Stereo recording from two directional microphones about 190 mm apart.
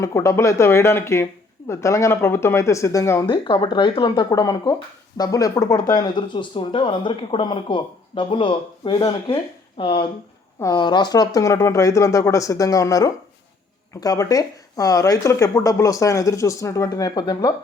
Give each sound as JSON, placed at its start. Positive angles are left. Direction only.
{"t": 0.0, "sound": "speech", "side_deg": 15}